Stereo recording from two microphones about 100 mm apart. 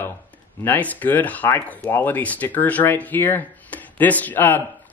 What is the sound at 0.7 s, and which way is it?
Speech, 15° left (ahead or behind).